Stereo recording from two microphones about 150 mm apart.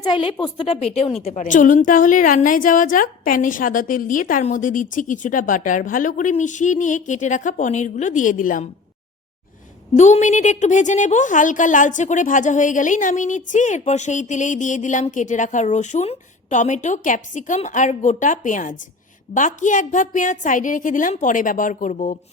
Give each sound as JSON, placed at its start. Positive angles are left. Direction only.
{"t": 0.0, "sound": "a woman's voice", "side_deg": 35}
{"t": 9.9, "sound": "a woman's voice", "side_deg": 50}